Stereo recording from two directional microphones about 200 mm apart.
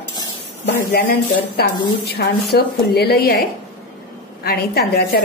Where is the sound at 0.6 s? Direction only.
50° left (ahead or behind).